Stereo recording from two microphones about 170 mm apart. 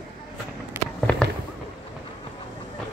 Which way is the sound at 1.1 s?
5° left (ahead or behind).